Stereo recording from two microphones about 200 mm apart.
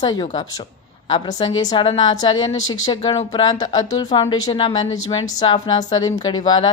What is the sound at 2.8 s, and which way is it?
Speech, 20° left (ahead or behind).